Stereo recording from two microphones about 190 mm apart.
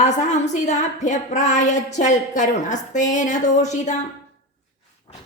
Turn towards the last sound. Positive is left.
turn(degrees=40)  # may be behind; listen again after turning